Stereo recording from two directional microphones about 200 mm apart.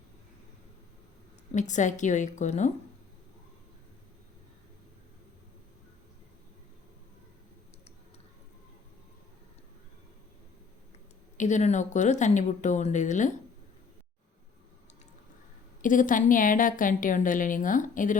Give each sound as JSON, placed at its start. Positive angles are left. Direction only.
{"t": 1.5, "sound": "a woman's voice", "side_deg": 40}
{"t": 11.3, "sound": "a woman's voice", "side_deg": 35}
{"t": 15.8, "sound": "a woman's voice", "side_deg": 40}